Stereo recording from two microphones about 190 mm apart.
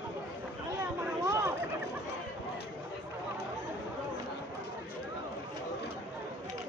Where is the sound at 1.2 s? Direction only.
15° right (ahead or behind).